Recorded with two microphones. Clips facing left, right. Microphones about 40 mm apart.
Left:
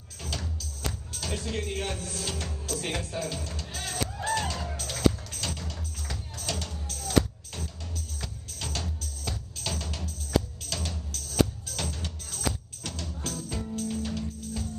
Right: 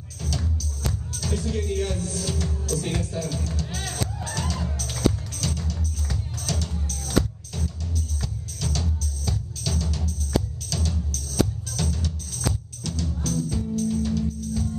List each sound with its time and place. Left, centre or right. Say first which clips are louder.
0.2 s music: right 5 dB; left
3.0 s speech: right 4 dB; left
3.7 s music: right 3 dB; right
4.0 s music: left 4 dB; left